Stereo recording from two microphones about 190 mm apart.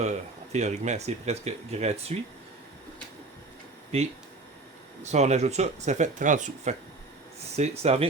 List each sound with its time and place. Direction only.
0.0 s speech: 35° right (ahead or behind)
5.1 s speech: 35° right (ahead or behind)